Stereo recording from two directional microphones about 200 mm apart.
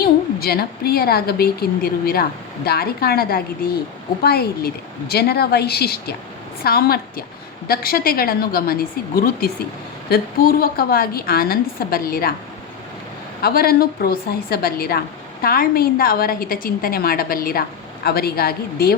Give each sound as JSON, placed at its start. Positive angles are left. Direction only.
{"t": 0.0, "sound": "a woman's voice", "side_deg": 50}
{"t": 13.4, "sound": "a woman's voice", "side_deg": 50}